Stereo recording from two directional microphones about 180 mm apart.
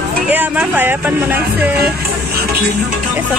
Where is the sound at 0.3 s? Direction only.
10° right (ahead or behind).